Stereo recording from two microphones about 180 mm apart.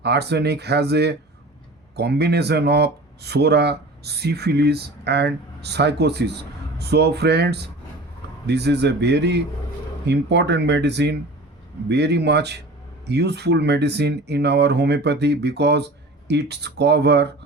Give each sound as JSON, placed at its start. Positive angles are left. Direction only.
{"t": 0.0, "sound": "speech", "side_deg": -65}